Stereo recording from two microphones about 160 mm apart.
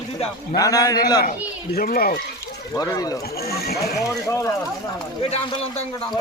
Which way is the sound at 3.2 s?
80° left.